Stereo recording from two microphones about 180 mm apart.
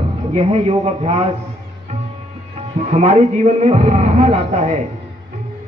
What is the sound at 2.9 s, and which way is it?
A man's voice, 40° right (ahead or behind).